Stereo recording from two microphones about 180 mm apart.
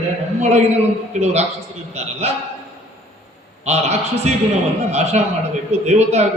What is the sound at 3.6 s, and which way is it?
A man's voice, 35° right (ahead or behind).